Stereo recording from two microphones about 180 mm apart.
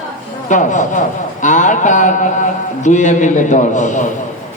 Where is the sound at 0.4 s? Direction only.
45° left (ahead or behind).